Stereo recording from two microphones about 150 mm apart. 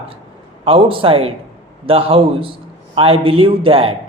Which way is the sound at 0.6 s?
35° right (ahead or behind).